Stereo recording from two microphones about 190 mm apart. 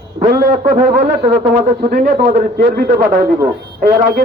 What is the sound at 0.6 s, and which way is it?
Speech, 45° right (ahead or behind).